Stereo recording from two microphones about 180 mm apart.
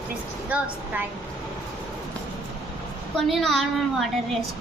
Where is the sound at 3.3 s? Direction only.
Centre (ahead or behind).